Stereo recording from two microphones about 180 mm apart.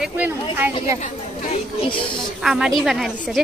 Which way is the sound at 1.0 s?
45° left (ahead or behind).